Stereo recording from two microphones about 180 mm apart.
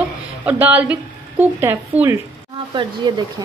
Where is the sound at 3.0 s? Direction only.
25° right (ahead or behind).